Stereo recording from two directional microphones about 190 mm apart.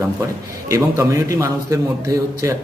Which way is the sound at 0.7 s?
15° right (ahead or behind).